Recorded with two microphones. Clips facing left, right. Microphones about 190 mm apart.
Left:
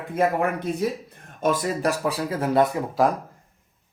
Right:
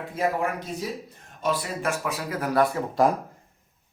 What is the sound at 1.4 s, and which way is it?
Speech, 45° left (ahead or behind).